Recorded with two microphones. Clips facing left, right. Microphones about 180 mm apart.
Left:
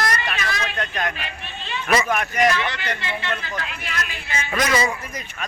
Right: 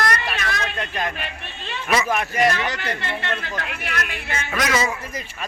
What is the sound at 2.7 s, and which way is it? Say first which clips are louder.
Speech: right 1 dB; 60° right (ahead or behind).